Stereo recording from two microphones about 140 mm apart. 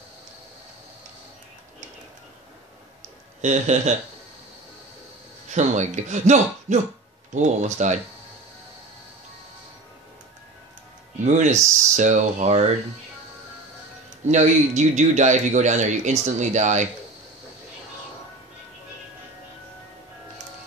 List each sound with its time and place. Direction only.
3.3 s speech: 55° right (ahead or behind)
5.5 s speech: 55° right (ahead or behind)
11.2 s speech: 55° right (ahead or behind)
14.2 s speech: 55° right (ahead or behind)